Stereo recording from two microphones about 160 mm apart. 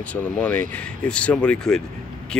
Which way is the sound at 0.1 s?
10° left (ahead or behind).